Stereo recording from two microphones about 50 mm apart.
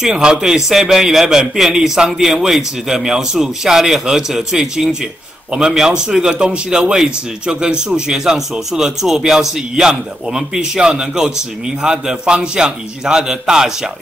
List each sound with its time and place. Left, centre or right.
0.0 s a man's voice: centre